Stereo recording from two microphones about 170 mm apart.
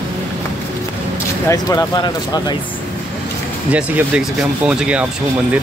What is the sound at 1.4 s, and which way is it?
Speech, 25° left (ahead or behind).